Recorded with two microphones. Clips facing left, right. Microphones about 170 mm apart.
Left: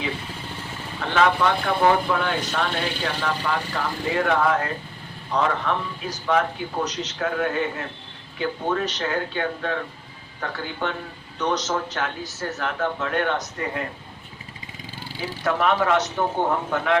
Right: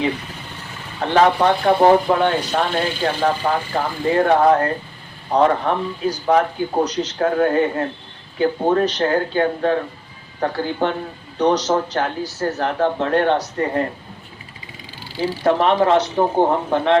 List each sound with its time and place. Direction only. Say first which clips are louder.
1.0 s a man's voice: right 5 dB; 35° right (ahead or behind)
15.2 s a man's voice: right 6 dB; 30° right (ahead or behind)